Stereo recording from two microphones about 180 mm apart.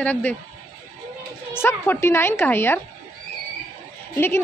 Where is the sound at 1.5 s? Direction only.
10° left (ahead or behind).